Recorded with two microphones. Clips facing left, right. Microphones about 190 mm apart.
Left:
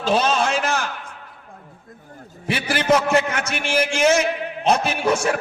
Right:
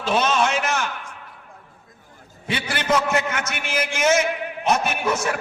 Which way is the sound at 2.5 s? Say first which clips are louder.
Left 4 dB; 30° left (ahead or behind).